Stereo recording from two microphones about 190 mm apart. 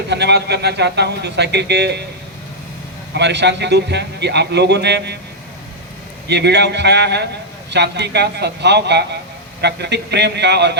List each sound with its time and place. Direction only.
0.1 s a man's voice: 60° right (ahead or behind)
3.2 s a man's voice: 65° right (ahead or behind)
6.2 s a man's voice: 60° right (ahead or behind)